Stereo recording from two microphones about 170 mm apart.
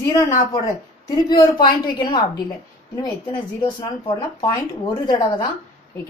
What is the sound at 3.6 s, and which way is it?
Speech, 25° left (ahead or behind).